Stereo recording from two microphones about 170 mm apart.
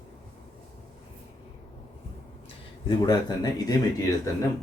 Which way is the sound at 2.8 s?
25° left (ahead or behind).